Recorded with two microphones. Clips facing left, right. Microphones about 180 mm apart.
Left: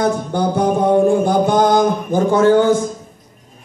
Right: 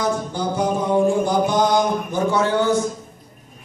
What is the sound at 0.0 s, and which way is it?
Music, 60° left (ahead or behind).